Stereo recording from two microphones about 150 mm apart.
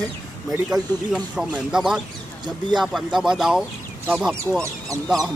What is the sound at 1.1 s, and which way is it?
Speech, 5° right (ahead or behind).